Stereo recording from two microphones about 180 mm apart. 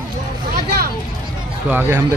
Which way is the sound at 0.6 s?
55° right (ahead or behind).